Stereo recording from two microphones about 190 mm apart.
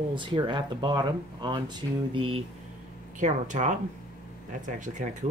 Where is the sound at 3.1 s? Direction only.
40° right (ahead or behind).